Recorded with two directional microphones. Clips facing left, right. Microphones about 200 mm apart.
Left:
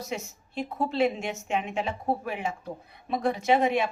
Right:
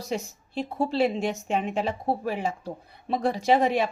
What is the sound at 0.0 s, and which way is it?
A woman's voice, 30° right (ahead or behind).